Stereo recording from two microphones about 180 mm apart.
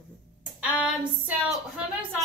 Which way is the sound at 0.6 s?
10° right (ahead or behind).